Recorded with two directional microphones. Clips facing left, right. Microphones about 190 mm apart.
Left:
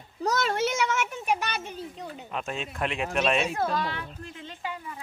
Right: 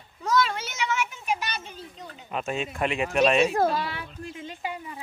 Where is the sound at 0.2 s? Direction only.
45° left (ahead or behind).